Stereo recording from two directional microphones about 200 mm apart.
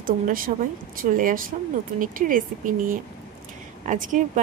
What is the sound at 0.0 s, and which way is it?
A woman's voice, 45° right (ahead or behind).